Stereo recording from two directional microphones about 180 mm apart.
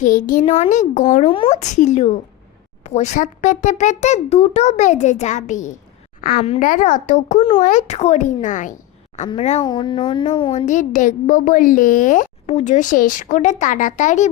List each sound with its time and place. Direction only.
0.0 s speech: 45° left (ahead or behind)
0.4 s a child's voice: 35° left (ahead or behind)
9.6 s speech: 25° left (ahead or behind)
10.7 s speech: 45° left (ahead or behind)